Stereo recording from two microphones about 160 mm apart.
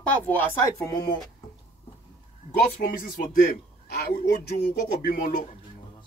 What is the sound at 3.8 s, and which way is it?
Speech, 80° left.